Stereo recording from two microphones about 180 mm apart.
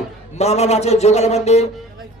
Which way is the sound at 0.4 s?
35° left (ahead or behind).